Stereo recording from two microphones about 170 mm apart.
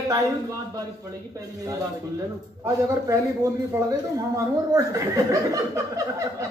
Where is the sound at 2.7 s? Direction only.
20° right (ahead or behind).